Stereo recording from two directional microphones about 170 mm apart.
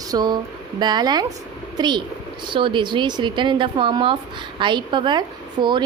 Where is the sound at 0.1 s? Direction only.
25° right (ahead or behind).